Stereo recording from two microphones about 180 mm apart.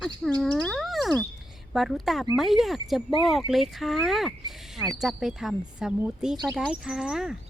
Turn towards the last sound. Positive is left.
turn(degrees=-5)  # may be behind; listen again after turning